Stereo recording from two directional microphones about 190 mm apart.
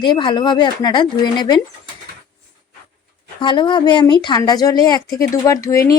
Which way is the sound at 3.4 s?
25° left (ahead or behind).